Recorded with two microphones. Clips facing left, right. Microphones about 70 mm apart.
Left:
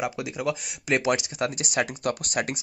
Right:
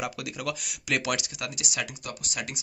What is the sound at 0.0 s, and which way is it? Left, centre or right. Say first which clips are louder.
Speech: left 5 dB; left.